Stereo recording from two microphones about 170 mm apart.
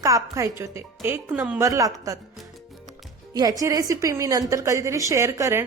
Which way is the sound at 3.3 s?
20° right (ahead or behind).